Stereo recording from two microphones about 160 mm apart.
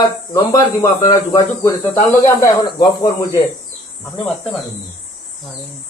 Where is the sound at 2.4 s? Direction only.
25° left (ahead or behind).